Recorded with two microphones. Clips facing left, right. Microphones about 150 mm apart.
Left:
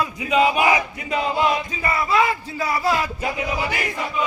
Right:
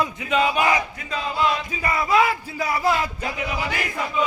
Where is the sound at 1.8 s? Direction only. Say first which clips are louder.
Right 1 dB; 15° right (ahead or behind).